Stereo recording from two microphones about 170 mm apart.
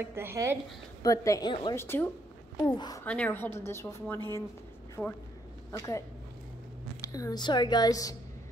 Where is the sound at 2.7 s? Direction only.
25° left (ahead or behind).